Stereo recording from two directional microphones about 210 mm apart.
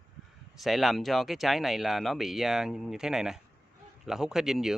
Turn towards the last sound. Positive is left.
turn(degrees=0)  # may be behind; listen again after turning